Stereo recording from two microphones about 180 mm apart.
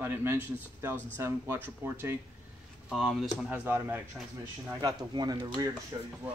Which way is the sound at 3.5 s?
10° right (ahead or behind).